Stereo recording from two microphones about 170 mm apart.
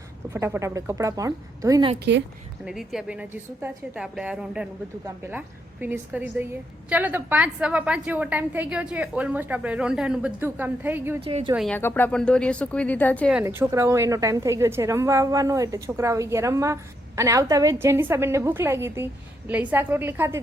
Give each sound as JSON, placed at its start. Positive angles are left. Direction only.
{"t": 0.3, "sound": "a woman's voice", "side_deg": -15}
{"t": 2.6, "sound": "a woman's voice", "side_deg": -5}
{"t": 11.2, "sound": "a woman's voice", "side_deg": -35}
{"t": 11.7, "sound": "speech", "side_deg": 10}
{"t": 13.4, "sound": "a woman's voice", "side_deg": -15}